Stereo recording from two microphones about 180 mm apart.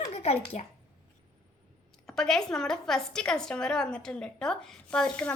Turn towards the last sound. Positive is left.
turn(degrees=5)  # may be behind; listen again after turning